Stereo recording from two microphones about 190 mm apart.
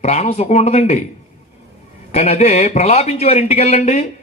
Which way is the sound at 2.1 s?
35° left (ahead or behind).